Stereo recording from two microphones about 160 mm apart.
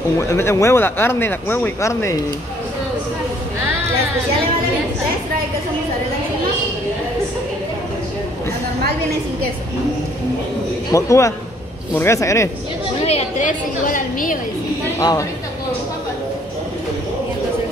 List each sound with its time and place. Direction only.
0.2 s speech: 15° left (ahead or behind)
10.9 s speech: 20° left (ahead or behind)
13.0 s a woman's voice: 45° left (ahead or behind)
15.0 s speech: 20° left (ahead or behind)